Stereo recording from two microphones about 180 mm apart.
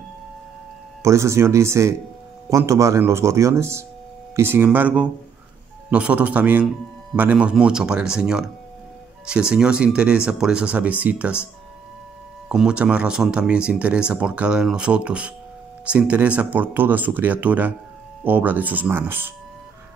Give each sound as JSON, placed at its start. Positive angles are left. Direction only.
{"t": 1.0, "sound": "speech", "side_deg": -15}
{"t": 12.4, "sound": "speech", "side_deg": -5}